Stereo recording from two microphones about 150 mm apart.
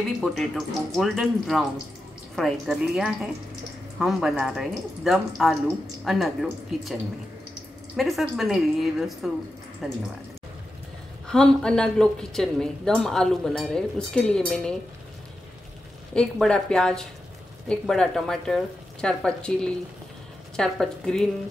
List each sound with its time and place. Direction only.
0.2 s a woman's voice: centre (ahead or behind)
11.2 s a woman's voice: 5° left (ahead or behind)
16.2 s a woman's voice: 5° left (ahead or behind)